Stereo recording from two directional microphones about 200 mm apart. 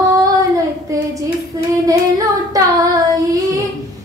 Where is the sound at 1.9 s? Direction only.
15° right (ahead or behind).